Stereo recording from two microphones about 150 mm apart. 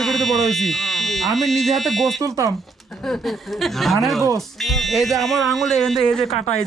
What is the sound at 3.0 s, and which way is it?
A woman's voice, centre (ahead or behind).